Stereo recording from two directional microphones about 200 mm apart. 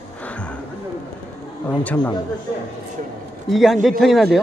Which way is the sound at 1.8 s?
5° left (ahead or behind).